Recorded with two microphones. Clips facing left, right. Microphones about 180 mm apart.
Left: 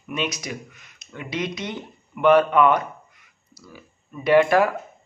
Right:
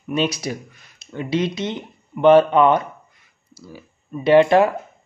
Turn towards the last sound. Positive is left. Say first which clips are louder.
# right 4 dB
turn(degrees=-25)  # may be behind; listen again after turning